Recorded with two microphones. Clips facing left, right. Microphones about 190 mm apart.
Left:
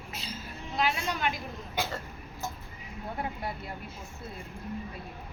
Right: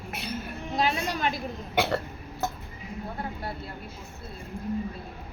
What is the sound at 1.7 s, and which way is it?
Speech, 65° right (ahead or behind).